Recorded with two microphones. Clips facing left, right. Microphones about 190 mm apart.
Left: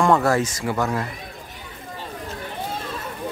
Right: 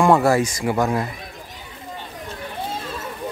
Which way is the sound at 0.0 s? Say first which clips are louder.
Right 2 dB; 10° right (ahead or behind).